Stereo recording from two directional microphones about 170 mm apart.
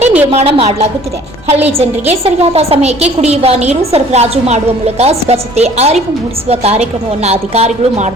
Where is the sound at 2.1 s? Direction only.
35° right (ahead or behind).